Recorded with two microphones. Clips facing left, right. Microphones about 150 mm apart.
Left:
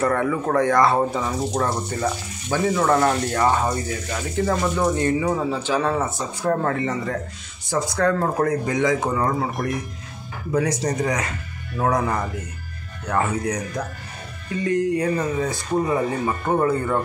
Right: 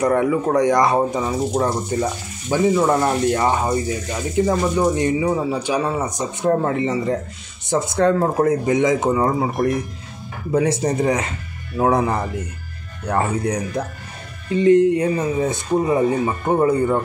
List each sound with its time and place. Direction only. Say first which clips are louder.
0.0 s speech: right 4 dB; 15° right (ahead or behind)
10.5 s speech: right 4 dB; 25° right (ahead or behind)